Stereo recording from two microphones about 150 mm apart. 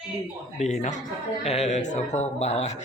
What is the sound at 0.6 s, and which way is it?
Speech, 50° left (ahead or behind).